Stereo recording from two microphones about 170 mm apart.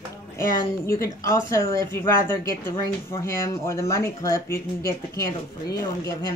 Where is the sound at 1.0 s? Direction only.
15° left (ahead or behind).